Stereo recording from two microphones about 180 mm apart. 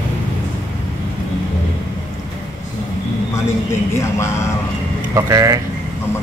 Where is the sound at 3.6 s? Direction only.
15° left (ahead or behind).